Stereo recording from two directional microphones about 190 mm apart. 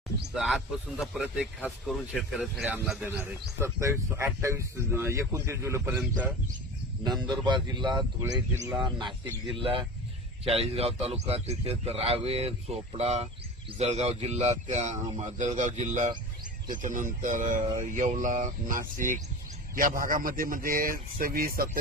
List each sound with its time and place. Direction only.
0.3 s speech: centre (ahead or behind)
3.1 s speech: 15° right (ahead or behind)
7.4 s a man's voice: 25° right (ahead or behind); by 21.7 s 50° right (ahead or behind)